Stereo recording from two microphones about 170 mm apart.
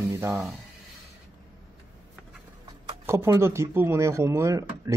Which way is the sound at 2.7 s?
20° right (ahead or behind).